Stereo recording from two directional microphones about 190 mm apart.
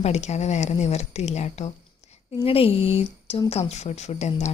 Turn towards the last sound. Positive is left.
turn(degrees=35)  # may be behind; listen again after turning